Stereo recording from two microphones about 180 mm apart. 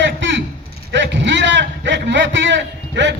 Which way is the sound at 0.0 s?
90° right.